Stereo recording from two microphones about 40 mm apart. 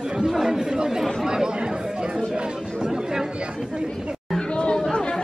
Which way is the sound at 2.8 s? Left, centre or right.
Centre.